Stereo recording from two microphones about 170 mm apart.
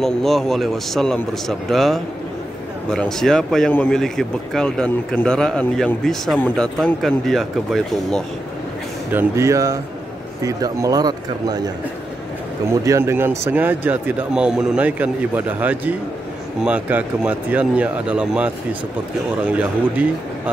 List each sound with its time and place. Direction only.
0.0 s speech: centre (ahead or behind)
9.1 s speech: 15° right (ahead or behind)
12.8 s speech: 15° right (ahead or behind)